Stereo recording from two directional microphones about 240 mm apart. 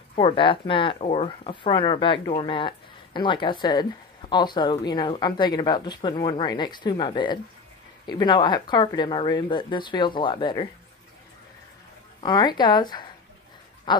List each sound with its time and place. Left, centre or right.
0.1 s speech: left
12.2 s speech: centre